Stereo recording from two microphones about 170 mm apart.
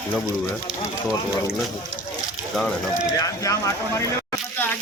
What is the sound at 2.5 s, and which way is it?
Speech, 5° left (ahead or behind).